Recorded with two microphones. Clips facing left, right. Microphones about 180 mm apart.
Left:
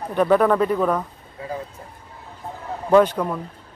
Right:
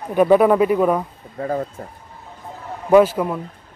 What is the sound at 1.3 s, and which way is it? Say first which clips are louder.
Speech: right 8 dB; 50° right (ahead or behind).